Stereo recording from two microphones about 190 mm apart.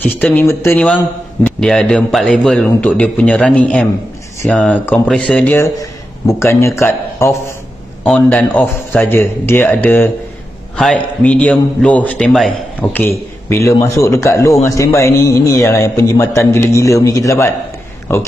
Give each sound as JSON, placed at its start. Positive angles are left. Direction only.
{"t": 0.0, "sound": "a man's voice", "side_deg": 10}
{"t": 12.8, "sound": "a man's voice", "side_deg": 10}